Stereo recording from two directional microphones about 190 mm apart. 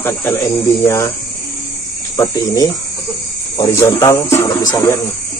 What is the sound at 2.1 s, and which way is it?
Cricket, 20° left (ahead or behind).